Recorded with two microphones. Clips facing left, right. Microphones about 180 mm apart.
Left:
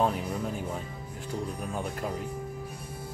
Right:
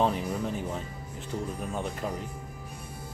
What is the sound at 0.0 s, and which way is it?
Speech, 5° left (ahead or behind).